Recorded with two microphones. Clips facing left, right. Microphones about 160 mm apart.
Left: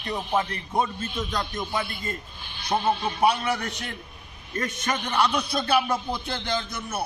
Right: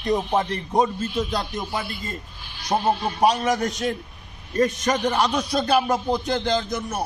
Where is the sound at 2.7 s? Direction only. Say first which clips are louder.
Right 3 dB; 25° right (ahead or behind).